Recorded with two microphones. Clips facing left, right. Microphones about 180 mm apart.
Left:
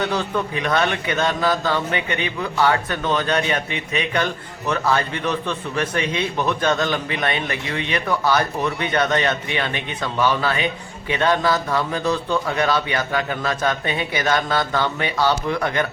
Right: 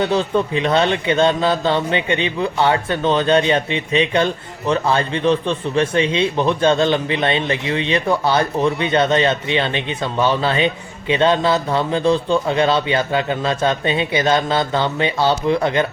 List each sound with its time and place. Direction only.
0.0 s a man's voice: 25° right (ahead or behind)